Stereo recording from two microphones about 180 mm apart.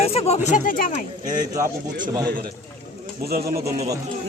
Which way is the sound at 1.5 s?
20° right (ahead or behind).